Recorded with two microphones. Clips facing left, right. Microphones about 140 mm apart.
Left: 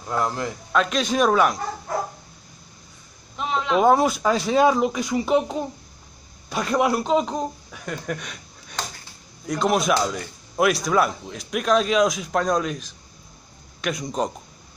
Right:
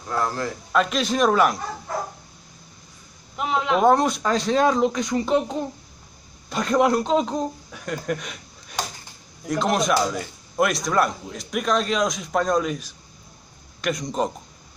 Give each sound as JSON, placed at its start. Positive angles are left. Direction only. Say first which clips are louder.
{"t": 0.1, "sound": "a man's voice", "louder": "left 1 dB", "side_deg": 15}
{"t": 0.7, "sound": "speech", "louder": "even", "side_deg": 0}
{"t": 3.3, "sound": "a sound", "louder": "even", "side_deg": -10}
{"t": 3.8, "sound": "a man's voice", "louder": "left 1 dB", "side_deg": 5}